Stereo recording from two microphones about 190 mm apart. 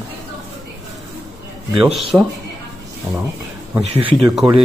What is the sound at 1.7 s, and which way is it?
Speech, 5° right (ahead or behind).